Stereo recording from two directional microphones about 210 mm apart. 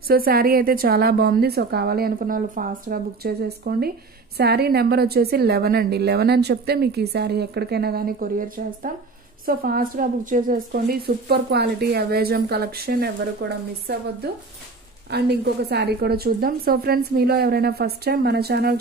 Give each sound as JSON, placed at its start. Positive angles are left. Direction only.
{"t": 0.1, "sound": "a woman's voice", "side_deg": -45}
{"t": 15.0, "sound": "a woman's voice", "side_deg": -50}